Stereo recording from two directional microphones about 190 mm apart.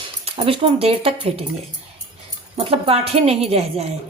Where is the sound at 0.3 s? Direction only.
30° right (ahead or behind).